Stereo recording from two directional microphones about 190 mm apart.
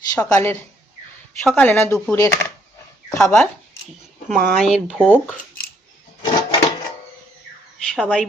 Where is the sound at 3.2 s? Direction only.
5° left (ahead or behind).